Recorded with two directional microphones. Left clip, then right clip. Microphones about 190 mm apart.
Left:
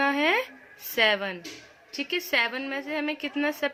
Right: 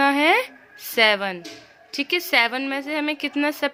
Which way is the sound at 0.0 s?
40° right (ahead or behind).